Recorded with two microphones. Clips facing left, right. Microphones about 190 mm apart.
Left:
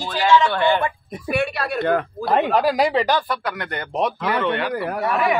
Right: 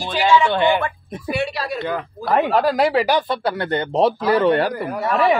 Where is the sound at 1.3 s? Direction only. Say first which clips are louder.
Left 1 dB; 55° left (ahead or behind).